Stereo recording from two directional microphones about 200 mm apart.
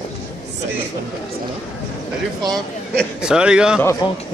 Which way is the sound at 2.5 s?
Centre (ahead or behind).